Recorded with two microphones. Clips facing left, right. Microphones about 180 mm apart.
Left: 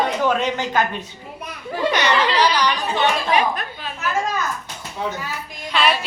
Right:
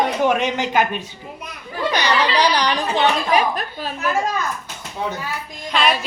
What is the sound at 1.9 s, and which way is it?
Chatter, 35° right (ahead or behind).